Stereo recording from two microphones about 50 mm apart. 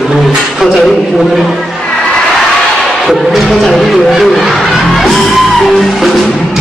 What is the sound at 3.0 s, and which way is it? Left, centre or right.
Speech, centre.